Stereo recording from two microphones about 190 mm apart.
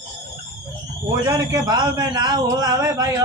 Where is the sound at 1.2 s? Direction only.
25° right (ahead or behind).